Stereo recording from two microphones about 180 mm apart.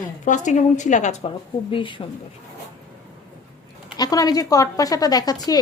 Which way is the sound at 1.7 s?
30° left (ahead or behind).